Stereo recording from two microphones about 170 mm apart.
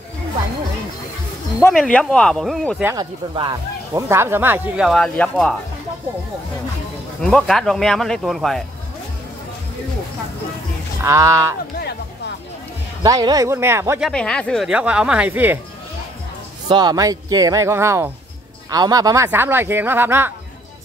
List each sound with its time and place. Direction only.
1.7 s speech: 5° left (ahead or behind)
2.8 s speech: 15° right (ahead or behind)
4.1 s speech: 15° right (ahead or behind)
4.8 s speech: 5° left (ahead or behind)
7.2 s speech: 5° left (ahead or behind)
11.0 s speech: 15° right (ahead or behind)
13.0 s speech: 20° right (ahead or behind)
14.0 s speech: 5° left (ahead or behind); by 15.6 s 10° right (ahead or behind)
16.6 s speech: 25° right (ahead or behind)